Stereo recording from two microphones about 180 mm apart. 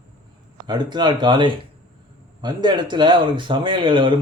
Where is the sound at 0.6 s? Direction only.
25° right (ahead or behind).